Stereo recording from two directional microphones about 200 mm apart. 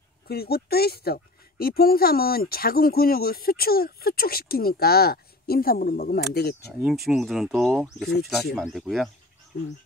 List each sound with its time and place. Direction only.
0.3 s speech: 50° left (ahead or behind)
7.1 s speech: centre (ahead or behind)